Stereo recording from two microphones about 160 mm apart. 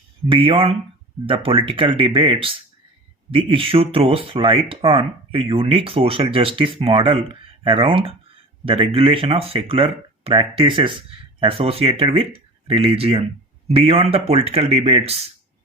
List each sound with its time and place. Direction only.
0.3 s speech: 35° right (ahead or behind)